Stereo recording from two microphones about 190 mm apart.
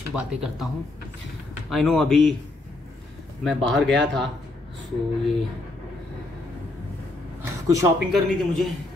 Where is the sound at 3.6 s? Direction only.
5° left (ahead or behind).